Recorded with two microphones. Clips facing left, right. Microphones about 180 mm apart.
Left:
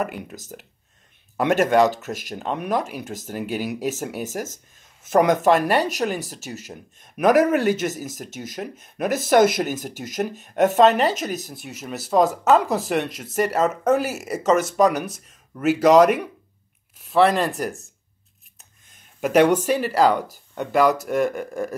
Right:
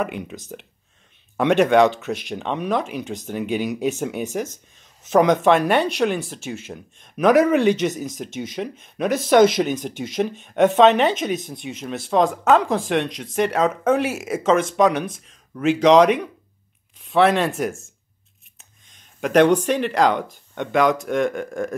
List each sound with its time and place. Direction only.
0.0 s speech: 5° left (ahead or behind)
6.4 s speech: 40° left (ahead or behind)
6.7 s speech: 5° left (ahead or behind)